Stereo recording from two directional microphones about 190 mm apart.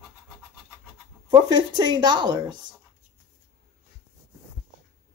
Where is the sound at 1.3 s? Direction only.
20° right (ahead or behind).